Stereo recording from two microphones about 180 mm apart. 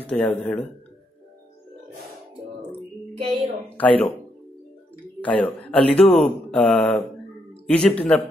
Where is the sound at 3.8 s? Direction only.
10° left (ahead or behind).